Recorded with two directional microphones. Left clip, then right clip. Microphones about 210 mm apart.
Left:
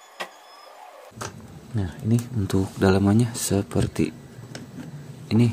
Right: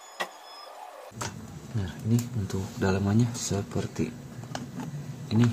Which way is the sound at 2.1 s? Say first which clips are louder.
Left 6 dB; 45° left (ahead or behind).